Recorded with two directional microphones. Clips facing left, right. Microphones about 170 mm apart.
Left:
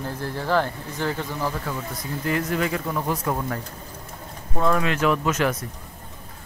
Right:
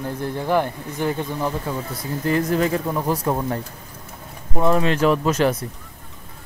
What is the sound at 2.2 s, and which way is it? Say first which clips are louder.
Speech: right 5 dB; 35° right (ahead or behind).